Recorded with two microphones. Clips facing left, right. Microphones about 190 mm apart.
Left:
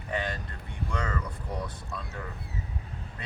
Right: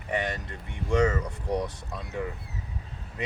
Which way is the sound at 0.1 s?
20° right (ahead or behind).